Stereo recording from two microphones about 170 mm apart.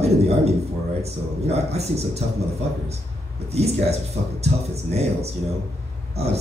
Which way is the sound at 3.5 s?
40° right (ahead or behind).